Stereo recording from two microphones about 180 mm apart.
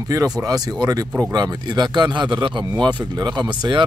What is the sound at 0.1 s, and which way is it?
Speech, 20° right (ahead or behind).